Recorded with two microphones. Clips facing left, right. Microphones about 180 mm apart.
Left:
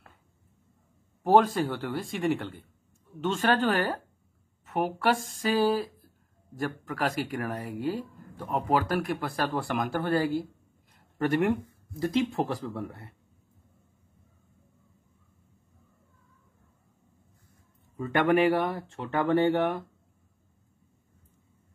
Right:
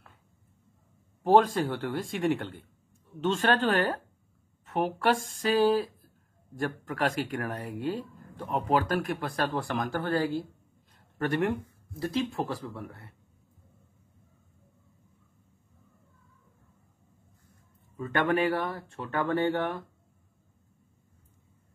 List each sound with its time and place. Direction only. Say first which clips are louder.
1.2 s speech: even; centre (ahead or behind)
12.0 s speech: left 3 dB; 15° left (ahead or behind)
17.9 s speech: left 3 dB; 15° left (ahead or behind)